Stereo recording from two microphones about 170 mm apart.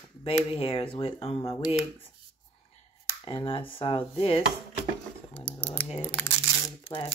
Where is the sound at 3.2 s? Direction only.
30° left (ahead or behind).